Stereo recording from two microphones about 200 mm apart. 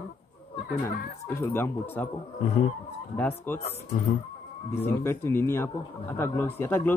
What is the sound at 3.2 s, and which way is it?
Speech, 10° left (ahead or behind).